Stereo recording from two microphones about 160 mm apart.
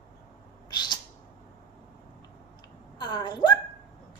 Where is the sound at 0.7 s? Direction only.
30° left (ahead or behind).